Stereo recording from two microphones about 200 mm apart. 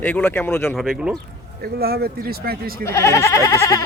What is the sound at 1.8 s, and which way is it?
Speech, 50° right (ahead or behind).